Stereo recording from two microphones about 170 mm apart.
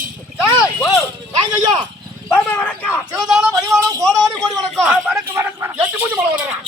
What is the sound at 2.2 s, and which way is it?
Speech, 10° left (ahead or behind).